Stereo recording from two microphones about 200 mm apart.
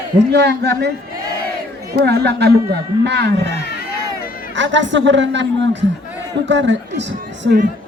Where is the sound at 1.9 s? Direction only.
50° right (ahead or behind).